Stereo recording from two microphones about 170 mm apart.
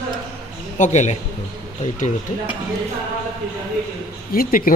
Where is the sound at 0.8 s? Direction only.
45° left (ahead or behind).